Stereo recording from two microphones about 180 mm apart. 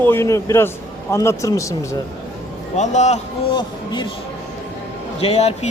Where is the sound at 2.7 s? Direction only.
40° left (ahead or behind).